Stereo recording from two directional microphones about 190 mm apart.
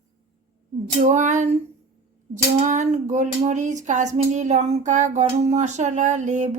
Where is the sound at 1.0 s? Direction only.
40° right (ahead or behind).